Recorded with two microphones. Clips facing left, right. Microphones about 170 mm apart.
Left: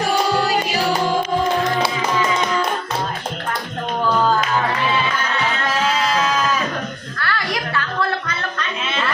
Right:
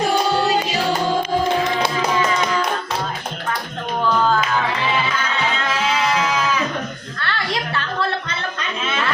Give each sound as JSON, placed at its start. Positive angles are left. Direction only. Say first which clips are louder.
{"t": 0.4, "sound": "music", "louder": "right 1 dB", "side_deg": -25}
{"t": 7.2, "sound": "music", "louder": "left 1 dB", "side_deg": -25}